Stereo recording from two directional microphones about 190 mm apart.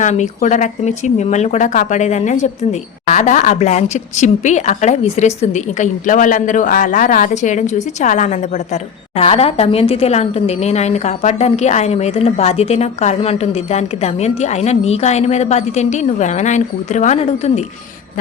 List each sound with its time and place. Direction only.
0.0 s speech: 40° left (ahead or behind)